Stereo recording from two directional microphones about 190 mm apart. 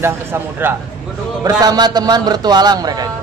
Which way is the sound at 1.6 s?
20° right (ahead or behind).